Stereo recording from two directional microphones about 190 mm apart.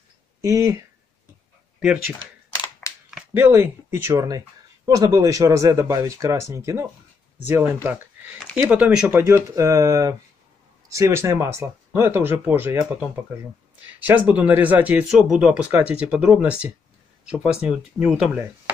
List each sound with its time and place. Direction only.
0.4 s speech: 15° right (ahead or behind)
3.1 s speech: 5° right (ahead or behind)